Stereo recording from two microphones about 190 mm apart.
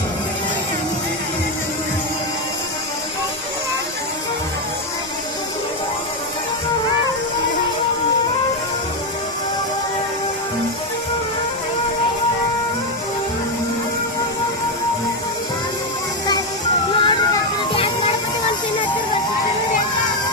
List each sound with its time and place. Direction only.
16.9 s music: 25° left (ahead or behind)